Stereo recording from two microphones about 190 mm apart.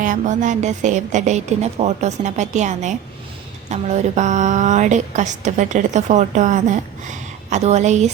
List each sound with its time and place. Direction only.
0.0 s a woman's voice: 40° right (ahead or behind)